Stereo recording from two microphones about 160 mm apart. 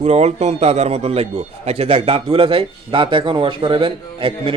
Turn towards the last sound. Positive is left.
turn(degrees=-35)  # may be behind; listen again after turning